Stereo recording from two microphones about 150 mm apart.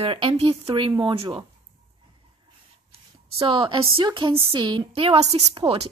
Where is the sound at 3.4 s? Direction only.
35° right (ahead or behind).